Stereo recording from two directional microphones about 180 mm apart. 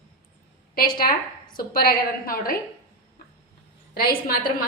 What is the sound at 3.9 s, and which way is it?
Speech, 55° left (ahead or behind).